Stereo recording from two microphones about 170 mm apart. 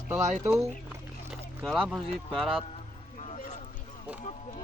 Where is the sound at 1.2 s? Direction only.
Centre (ahead or behind).